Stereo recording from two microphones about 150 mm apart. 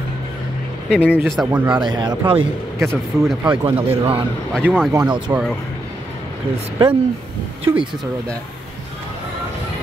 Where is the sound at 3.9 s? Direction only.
35° right (ahead or behind).